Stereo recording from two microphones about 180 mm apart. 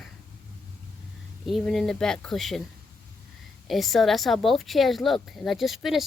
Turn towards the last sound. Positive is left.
turn(degrees=0)  # may be behind; listen again after turning